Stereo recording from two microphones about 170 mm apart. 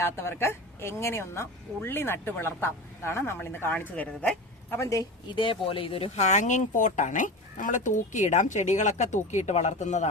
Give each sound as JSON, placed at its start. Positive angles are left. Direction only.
{"t": 0.0, "sound": "speech", "side_deg": 15}